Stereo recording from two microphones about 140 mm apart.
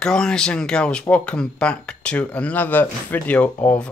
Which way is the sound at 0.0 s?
5° left (ahead or behind).